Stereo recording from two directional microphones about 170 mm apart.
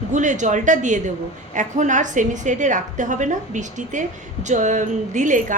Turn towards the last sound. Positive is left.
turn(degrees=-50)  # may be behind; listen again after turning